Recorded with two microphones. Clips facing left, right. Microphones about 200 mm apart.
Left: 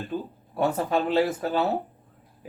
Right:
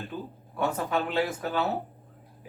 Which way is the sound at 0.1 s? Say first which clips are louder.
Left 7 dB; 15° left (ahead or behind).